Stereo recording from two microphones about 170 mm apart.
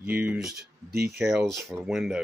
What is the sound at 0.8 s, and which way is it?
Speech, 70° right (ahead or behind).